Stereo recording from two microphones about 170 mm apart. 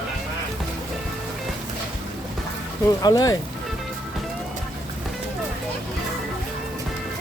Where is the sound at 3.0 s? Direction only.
20° left (ahead or behind).